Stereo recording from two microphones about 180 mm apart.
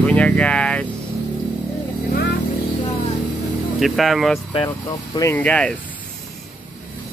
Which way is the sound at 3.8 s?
Centre (ahead or behind).